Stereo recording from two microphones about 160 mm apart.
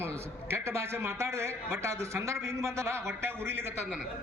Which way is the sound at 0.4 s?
15° right (ahead or behind).